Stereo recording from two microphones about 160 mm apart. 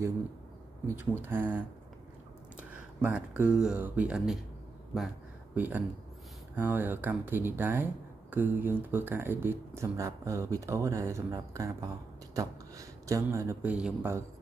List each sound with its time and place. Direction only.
0.8 s speech: 15° right (ahead or behind)
4.9 s a sound: centre (ahead or behind)
5.6 s speech: 10° right (ahead or behind)